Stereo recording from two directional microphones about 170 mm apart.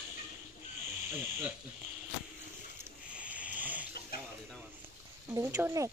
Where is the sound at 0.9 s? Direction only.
15° right (ahead or behind).